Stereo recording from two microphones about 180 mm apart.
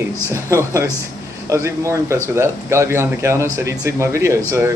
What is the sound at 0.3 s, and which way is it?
Speech, 15° right (ahead or behind).